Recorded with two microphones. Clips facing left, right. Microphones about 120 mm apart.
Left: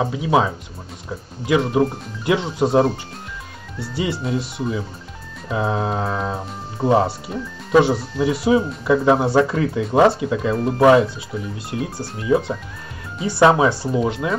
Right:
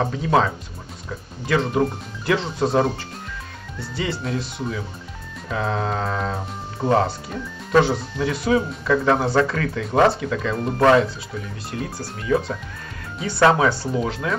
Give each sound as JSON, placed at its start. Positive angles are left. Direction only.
{"t": 0.0, "sound": "speech", "side_deg": 10}
{"t": 4.0, "sound": "speech", "side_deg": 15}
{"t": 10.5, "sound": "speech", "side_deg": 0}
{"t": 10.9, "sound": "speech", "side_deg": 15}
{"t": 12.2, "sound": "speech", "side_deg": 20}